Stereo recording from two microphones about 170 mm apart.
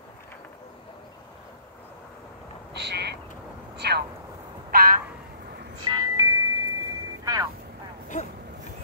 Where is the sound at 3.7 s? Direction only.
75° right (ahead or behind).